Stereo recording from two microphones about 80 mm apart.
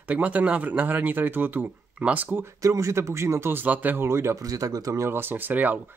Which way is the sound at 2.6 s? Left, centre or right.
Right.